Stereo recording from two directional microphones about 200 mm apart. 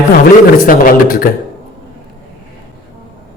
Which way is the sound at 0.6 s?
45° left (ahead or behind).